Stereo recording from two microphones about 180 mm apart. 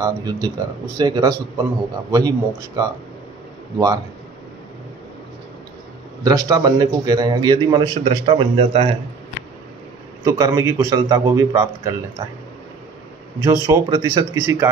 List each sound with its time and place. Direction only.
0.0 s speech: 20° right (ahead or behind)
6.2 s speech: 20° right (ahead or behind)
10.2 s speech: 20° right (ahead or behind)
13.4 s speech: 20° right (ahead or behind)